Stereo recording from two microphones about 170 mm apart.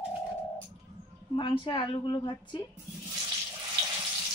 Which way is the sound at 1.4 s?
30° left (ahead or behind).